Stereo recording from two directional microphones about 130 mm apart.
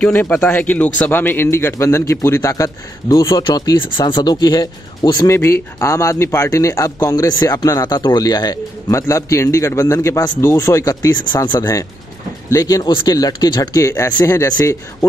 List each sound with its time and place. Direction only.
0.0 s speech: 10° left (ahead or behind)
3.4 s speech: 35° left (ahead or behind)